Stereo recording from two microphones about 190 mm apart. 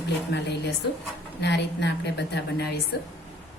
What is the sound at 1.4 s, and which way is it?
A woman's voice, 65° left (ahead or behind).